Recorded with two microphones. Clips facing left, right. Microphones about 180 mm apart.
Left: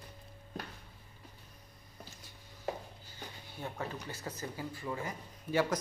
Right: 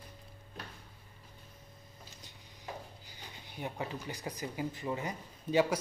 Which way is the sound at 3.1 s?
15° right (ahead or behind).